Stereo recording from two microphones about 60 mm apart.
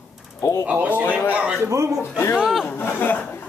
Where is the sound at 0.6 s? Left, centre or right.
Right.